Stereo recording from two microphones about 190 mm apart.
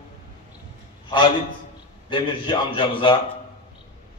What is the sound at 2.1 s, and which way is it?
Speech, 25° left (ahead or behind).